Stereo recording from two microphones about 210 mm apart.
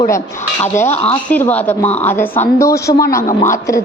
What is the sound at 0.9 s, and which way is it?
Speech, 30° left (ahead or behind).